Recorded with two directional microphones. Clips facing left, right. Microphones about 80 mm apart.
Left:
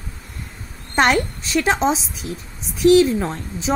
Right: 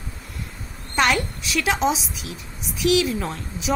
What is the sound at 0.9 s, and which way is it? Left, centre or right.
A woman's voice, left.